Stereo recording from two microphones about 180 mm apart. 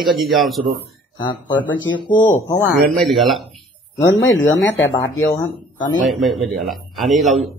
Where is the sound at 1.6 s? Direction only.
90° left.